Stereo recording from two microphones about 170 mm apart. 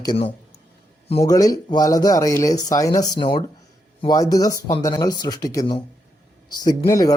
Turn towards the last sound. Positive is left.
turn(degrees=20)  # may be behind; listen again after turning